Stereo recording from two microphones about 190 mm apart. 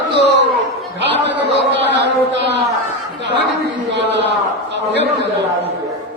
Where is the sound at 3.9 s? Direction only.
65° right (ahead or behind).